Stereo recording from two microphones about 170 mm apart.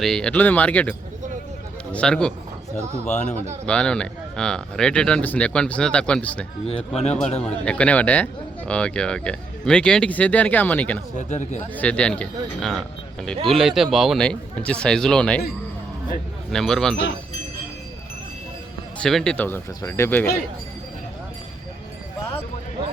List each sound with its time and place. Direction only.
0.0 s speech: 5° left (ahead or behind)
3.1 s speech: 45° left (ahead or behind)
3.7 s speech: 5° left (ahead or behind)
6.7 s a man's voice: 35° left (ahead or behind)
7.4 s speech: 5° left (ahead or behind)
11.2 s speech: 45° left (ahead or behind)
11.7 s speech: 5° left (ahead or behind)
16.5 s speech: 5° left (ahead or behind)
19.0 s speech: 5° left (ahead or behind)